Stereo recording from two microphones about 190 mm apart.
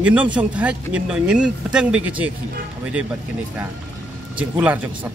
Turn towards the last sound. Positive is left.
turn(degrees=-5)  # may be behind; listen again after turning